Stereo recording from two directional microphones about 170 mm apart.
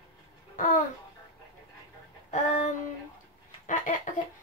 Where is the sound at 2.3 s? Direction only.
45° left (ahead or behind).